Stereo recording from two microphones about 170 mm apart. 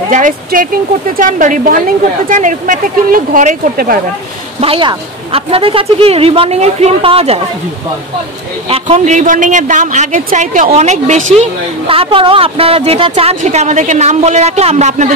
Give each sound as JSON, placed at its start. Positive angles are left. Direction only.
{"t": 0.1, "sound": "a woman's voice", "side_deg": -50}
{"t": 4.6, "sound": "speech", "side_deg": -30}
{"t": 8.6, "sound": "a woman's voice", "side_deg": -35}
{"t": 11.9, "sound": "speech", "side_deg": -30}